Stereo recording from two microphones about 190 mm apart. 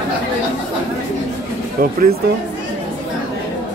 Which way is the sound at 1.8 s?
50° right (ahead or behind).